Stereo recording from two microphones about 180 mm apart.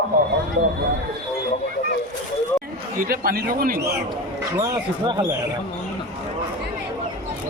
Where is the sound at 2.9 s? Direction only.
50° right (ahead or behind).